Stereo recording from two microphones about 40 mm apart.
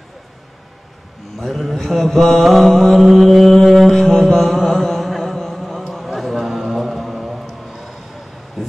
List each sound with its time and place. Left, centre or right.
1.4 s mantra: centre
3.9 s music: centre
6.0 s a sound: centre